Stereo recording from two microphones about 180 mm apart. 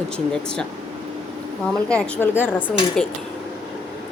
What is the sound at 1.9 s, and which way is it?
Speech, 5° left (ahead or behind).